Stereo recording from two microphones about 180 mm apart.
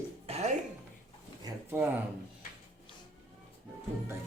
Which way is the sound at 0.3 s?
35° right (ahead or behind).